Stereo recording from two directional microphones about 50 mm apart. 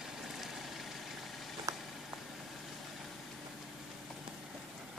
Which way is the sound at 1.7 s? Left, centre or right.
Right.